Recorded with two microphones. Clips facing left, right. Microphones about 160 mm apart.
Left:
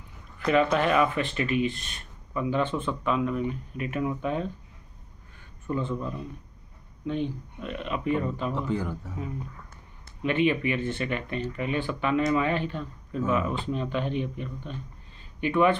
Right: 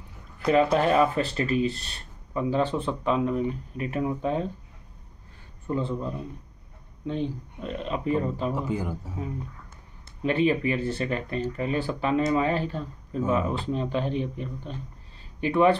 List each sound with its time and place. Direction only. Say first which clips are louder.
0.5 s speech: right 2 dB; 35° right (ahead or behind)
5.7 s a man's voice: right 1 dB; 30° right (ahead or behind)
8.5 s a man's voice: even; 10° right (ahead or behind)
10.2 s speech: right 1 dB; 35° right (ahead or behind)